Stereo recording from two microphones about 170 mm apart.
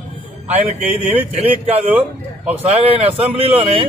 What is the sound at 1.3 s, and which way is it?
Speech, 40° right (ahead or behind).